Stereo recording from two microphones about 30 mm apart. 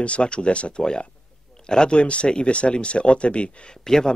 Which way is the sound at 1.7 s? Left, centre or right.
Left.